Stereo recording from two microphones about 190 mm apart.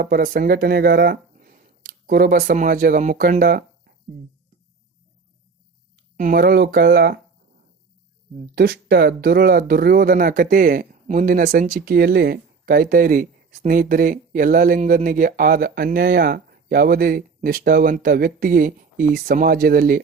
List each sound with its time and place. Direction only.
0.0 s speech: 50° right (ahead or behind)
6.1 s speech: 45° right (ahead or behind)
8.5 s speech: 55° right (ahead or behind)